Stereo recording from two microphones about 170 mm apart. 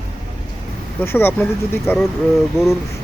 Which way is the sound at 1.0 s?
10° left (ahead or behind).